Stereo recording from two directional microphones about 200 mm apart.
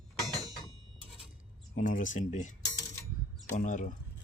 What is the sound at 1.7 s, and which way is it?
Speech, 40° left (ahead or behind).